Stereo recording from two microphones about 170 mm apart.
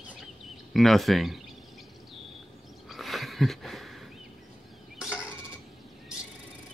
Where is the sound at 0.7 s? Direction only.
Centre (ahead or behind).